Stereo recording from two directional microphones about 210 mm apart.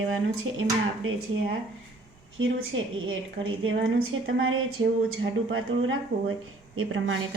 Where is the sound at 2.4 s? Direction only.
70° right (ahead or behind).